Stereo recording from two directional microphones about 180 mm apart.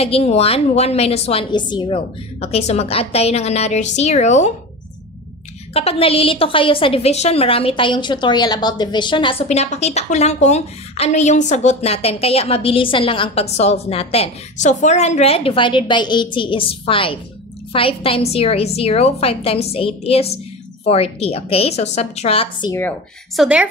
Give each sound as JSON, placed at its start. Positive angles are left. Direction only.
{"t": 0.0, "sound": "a woman's voice", "side_deg": 35}
{"t": 5.7, "sound": "a woman's voice", "side_deg": 35}
{"t": 22.7, "sound": "speech", "side_deg": 15}
{"t": 23.3, "sound": "speech", "side_deg": -5}